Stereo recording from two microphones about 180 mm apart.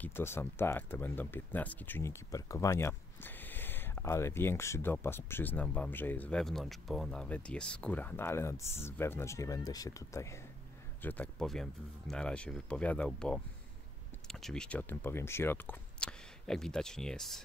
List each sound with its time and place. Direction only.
0.0 s speech: 15° left (ahead or behind)